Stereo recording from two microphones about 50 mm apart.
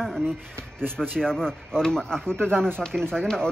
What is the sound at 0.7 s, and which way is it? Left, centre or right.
Speech, centre.